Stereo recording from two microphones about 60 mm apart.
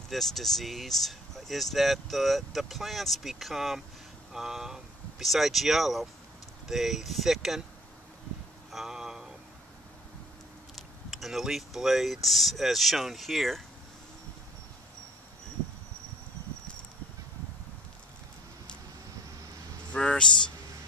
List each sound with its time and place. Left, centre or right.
0.1 s speech: centre
8.7 s a sound: centre
11.1 s speech: centre
19.9 s vehicle: centre